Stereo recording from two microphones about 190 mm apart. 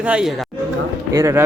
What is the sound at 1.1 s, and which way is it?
Speech, 15° right (ahead or behind).